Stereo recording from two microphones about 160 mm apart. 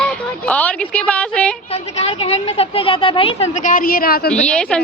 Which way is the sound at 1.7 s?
40° left (ahead or behind).